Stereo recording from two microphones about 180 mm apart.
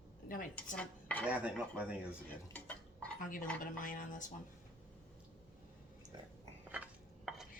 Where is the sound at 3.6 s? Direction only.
50° left (ahead or behind).